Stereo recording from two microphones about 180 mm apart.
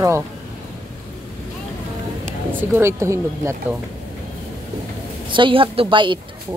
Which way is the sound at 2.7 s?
15° right (ahead or behind).